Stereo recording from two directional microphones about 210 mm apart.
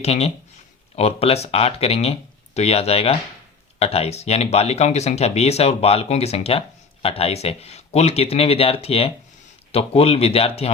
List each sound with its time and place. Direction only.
0.0 s speech: 30° left (ahead or behind)